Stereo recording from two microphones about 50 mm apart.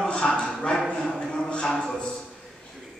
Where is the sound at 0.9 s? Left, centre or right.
Centre.